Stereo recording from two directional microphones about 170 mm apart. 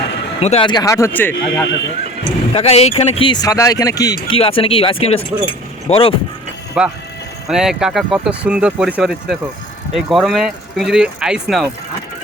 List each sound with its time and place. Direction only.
0.3 s speech: 35° left (ahead or behind); by 1.6 s 10° left (ahead or behind)
2.5 s speech: 35° left (ahead or behind)
4.4 s speech: 35° left (ahead or behind)
6.8 s speech: 5° right (ahead or behind)